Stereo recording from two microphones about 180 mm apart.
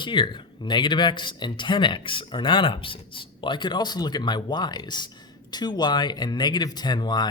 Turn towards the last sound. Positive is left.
turn(degrees=25)  # may be behind; listen again after turning